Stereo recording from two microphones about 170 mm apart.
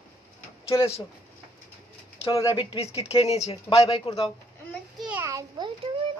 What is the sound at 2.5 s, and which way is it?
Speech, 30° left (ahead or behind).